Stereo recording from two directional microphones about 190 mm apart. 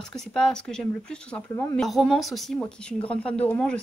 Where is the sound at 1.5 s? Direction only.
15° left (ahead or behind).